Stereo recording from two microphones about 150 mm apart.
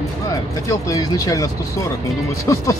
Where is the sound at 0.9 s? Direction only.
25° left (ahead or behind).